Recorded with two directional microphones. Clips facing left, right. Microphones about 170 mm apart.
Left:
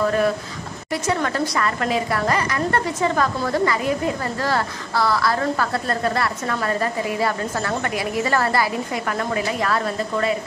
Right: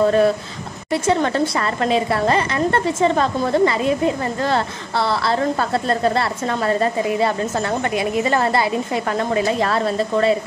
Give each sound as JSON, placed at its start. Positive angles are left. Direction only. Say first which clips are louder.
{"t": 0.0, "sound": "a woman's voice", "louder": "right 4 dB", "side_deg": -30}